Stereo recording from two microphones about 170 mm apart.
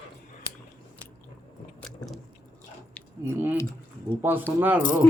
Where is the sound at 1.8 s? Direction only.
Centre (ahead or behind).